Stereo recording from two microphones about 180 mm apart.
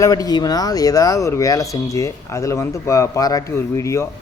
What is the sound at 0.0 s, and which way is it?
Speech, 20° left (ahead or behind).